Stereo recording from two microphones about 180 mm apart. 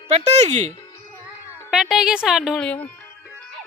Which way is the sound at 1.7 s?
Centre (ahead or behind).